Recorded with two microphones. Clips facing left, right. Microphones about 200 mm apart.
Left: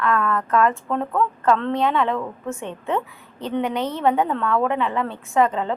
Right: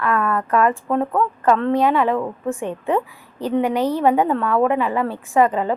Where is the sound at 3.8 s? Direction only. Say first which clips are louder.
Right 6 dB; 35° right (ahead or behind).